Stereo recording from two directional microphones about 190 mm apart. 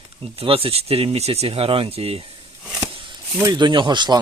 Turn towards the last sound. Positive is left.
turn(degrees=-25)  # may be behind; listen again after turning